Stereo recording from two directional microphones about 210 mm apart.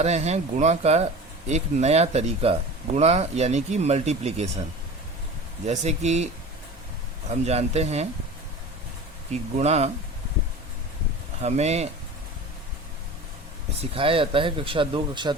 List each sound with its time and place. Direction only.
0.0 s speech: 30° right (ahead or behind)
5.6 s speech: 35° right (ahead or behind)
7.3 s speech: 30° right (ahead or behind)
9.3 s speech: 30° right (ahead or behind)
11.4 s speech: 30° right (ahead or behind)
13.9 s speech: 25° right (ahead or behind)